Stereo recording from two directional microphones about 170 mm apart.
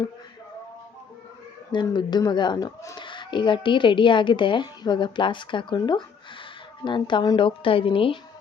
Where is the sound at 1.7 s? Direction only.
25° left (ahead or behind).